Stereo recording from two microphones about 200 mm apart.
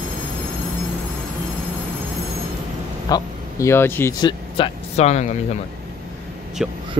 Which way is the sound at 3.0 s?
15° left (ahead or behind).